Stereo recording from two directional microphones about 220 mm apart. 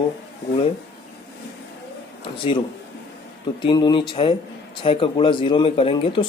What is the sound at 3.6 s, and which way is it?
Speech, 20° left (ahead or behind).